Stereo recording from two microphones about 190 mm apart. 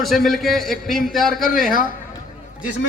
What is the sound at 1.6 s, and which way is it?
Speech, 45° left (ahead or behind).